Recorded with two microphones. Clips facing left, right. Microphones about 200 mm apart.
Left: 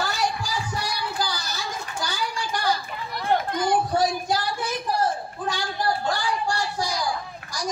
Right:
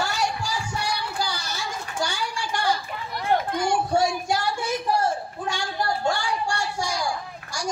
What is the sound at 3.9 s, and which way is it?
Child singing, 25° right (ahead or behind).